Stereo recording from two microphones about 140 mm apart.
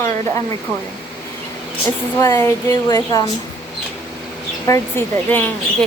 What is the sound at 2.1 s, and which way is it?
Speech, 20° left (ahead or behind).